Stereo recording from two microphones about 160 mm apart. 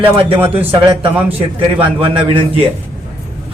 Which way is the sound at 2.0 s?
35° right (ahead or behind).